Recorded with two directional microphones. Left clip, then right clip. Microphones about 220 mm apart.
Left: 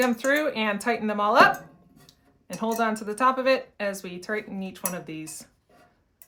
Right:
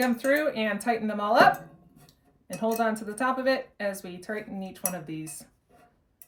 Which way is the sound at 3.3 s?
20° left (ahead or behind).